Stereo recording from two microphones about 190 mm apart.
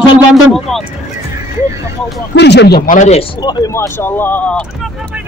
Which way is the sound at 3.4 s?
20° left (ahead or behind).